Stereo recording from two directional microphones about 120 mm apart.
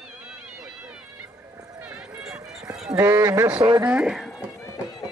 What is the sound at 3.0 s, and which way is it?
Speech, 25° right (ahead or behind).